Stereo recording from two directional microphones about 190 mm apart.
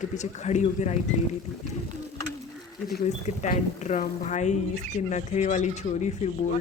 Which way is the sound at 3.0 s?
40° left (ahead or behind).